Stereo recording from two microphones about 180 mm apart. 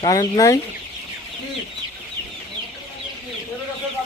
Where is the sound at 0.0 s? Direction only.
20° left (ahead or behind).